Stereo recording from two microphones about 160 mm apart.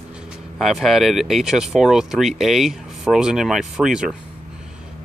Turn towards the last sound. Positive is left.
turn(degrees=-5)  # may be behind; listen again after turning